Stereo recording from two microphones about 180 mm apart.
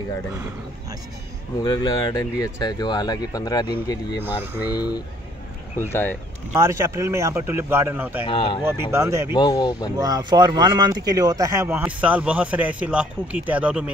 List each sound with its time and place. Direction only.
1.6 s speech: 25° left (ahead or behind)
4.2 s speech: 10° right (ahead or behind)
4.7 s speech: 20° left (ahead or behind)
5.8 s speech: 10° left (ahead or behind)
6.5 s speech: 15° right (ahead or behind)
8.3 s speech: 25° left (ahead or behind)
8.9 s speech: 15° right (ahead or behind)
9.3 s speech: 25° left (ahead or behind)
9.9 s speech: 20° right (ahead or behind)